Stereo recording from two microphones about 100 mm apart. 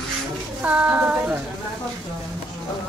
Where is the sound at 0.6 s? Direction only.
15° right (ahead or behind).